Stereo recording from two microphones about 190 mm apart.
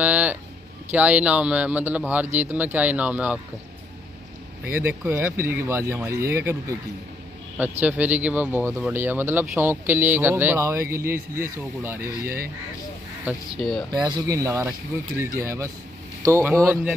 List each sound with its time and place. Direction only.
0.0 s a sound: 10° right (ahead or behind)
0.9 s speech: 5° right (ahead or behind)
4.7 s speech: 10° right (ahead or behind)
13.2 s speech: centre (ahead or behind)
13.9 s speech: 20° right (ahead or behind)